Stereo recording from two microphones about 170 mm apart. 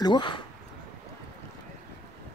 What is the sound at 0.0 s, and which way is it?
Speech, 25° left (ahead or behind).